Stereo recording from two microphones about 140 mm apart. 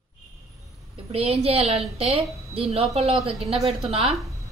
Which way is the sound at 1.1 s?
45° right (ahead or behind).